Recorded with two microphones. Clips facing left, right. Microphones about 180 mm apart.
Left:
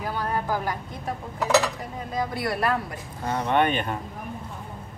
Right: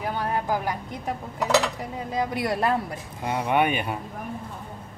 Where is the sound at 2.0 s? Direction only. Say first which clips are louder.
Right 2 dB; 20° right (ahead or behind).